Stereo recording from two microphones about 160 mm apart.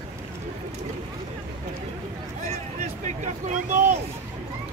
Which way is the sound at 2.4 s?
45° right (ahead or behind).